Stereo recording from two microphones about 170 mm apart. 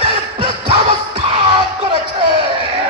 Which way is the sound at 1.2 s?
30° right (ahead or behind).